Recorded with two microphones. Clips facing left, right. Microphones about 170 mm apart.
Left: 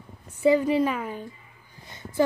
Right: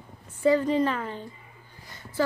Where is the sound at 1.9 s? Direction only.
20° left (ahead or behind).